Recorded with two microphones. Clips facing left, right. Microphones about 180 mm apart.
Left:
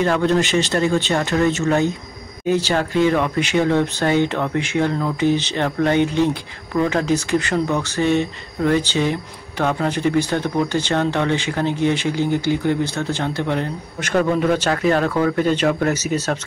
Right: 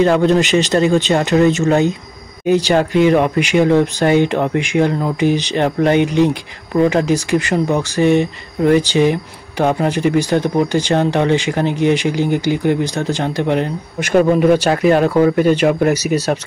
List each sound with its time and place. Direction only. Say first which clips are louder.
0.0 s speech: right 5 dB; 20° right (ahead or behind)